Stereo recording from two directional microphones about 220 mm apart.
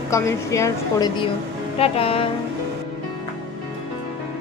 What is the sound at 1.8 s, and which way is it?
Music, 25° left (ahead or behind).